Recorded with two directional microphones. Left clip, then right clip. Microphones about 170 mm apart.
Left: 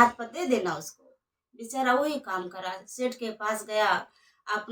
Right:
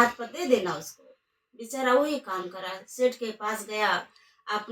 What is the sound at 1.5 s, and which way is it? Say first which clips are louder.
Speech: left 1 dB; 30° left (ahead or behind).